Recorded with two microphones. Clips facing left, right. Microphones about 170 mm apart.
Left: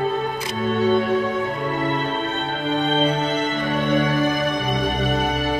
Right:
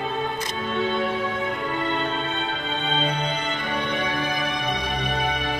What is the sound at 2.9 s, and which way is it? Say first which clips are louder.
Music: left 4 dB; 45° left (ahead or behind).